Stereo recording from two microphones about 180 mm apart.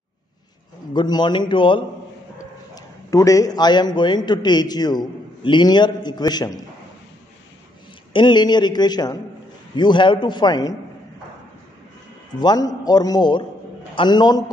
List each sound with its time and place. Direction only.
0.9 s a man's voice: 25° left (ahead or behind)
8.1 s a man's voice: 25° left (ahead or behind)
12.4 s a man's voice: 20° left (ahead or behind)